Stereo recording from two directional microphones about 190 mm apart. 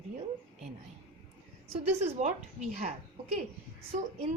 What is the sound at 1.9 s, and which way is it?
Speech, 35° right (ahead or behind).